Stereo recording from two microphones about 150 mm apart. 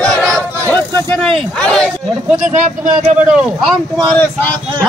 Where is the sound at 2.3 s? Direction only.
55° right (ahead or behind).